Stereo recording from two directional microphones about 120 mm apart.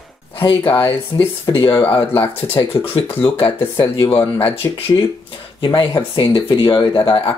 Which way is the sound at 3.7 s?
40° left (ahead or behind).